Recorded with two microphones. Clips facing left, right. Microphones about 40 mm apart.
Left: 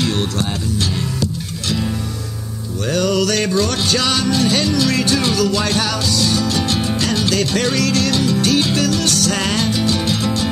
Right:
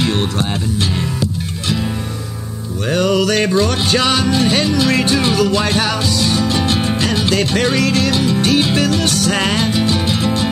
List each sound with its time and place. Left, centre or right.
0.0 s music: right
2.9 s music: right